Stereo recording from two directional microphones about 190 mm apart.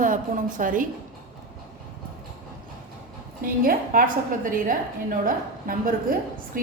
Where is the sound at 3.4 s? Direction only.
50° right (ahead or behind).